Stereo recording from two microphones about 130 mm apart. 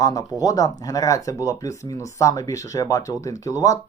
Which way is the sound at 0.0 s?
30° left (ahead or behind).